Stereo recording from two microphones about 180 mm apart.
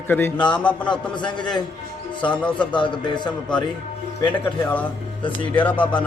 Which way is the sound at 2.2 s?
5° left (ahead or behind).